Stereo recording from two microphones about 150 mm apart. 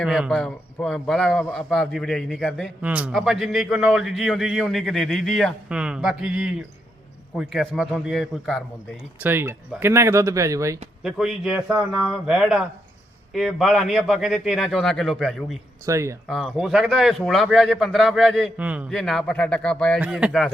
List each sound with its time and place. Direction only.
0.0 s a man's voice: centre (ahead or behind)
2.8 s a man's voice: 10° right (ahead or behind)
9.2 s speech: 15° right (ahead or behind)
11.0 s a man's voice: centre (ahead or behind)
15.9 s speech: 20° right (ahead or behind)
16.2 s a man's voice: centre (ahead or behind)
18.5 s a man's voice: 10° right (ahead or behind)
18.9 s speech: centre (ahead or behind)
20.0 s a man's voice: 5° right (ahead or behind)